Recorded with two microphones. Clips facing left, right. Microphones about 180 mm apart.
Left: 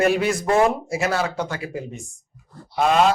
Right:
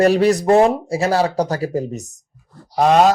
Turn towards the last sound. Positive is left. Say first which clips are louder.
# right 5 dB
turn(degrees=-40)  # may be behind; listen again after turning